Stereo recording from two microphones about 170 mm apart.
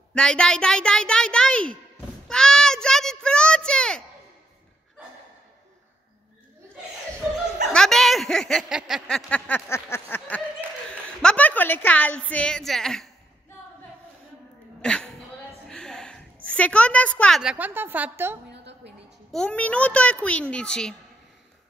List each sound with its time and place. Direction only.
0.1 s a child's voice: 5° left (ahead or behind)
7.7 s speech: 5° left (ahead or behind)
9.3 s a child's voice: 10° left (ahead or behind)
14.8 s a sound: 5° left (ahead or behind)
16.4 s a child's voice: 5° left (ahead or behind)
17.4 s a woman's voice: 5° right (ahead or behind)
18.5 s a sound: 90° right
19.3 s a child's voice: 5° left (ahead or behind)